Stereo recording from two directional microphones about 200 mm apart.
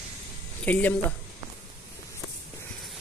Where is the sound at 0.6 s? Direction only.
10° left (ahead or behind).